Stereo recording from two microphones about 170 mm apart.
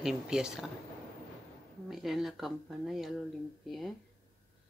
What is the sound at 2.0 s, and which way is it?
Speech, centre (ahead or behind).